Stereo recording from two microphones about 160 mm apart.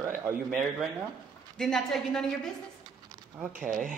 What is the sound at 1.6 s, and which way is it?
Speech, 5° left (ahead or behind).